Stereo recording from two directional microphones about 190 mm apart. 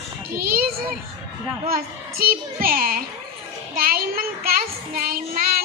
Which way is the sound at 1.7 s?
50° right (ahead or behind).